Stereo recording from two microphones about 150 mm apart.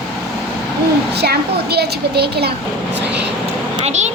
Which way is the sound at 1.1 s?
90° right.